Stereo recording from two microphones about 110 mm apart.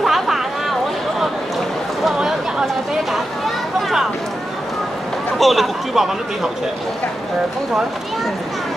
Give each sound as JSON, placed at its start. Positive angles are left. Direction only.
{"t": 0.0, "sound": "a sound", "side_deg": 0}
{"t": 2.0, "sound": "chatter", "side_deg": 0}
{"t": 5.4, "sound": "speech", "side_deg": 0}